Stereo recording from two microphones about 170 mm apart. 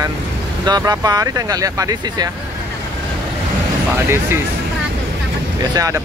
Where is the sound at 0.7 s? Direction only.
20° right (ahead or behind).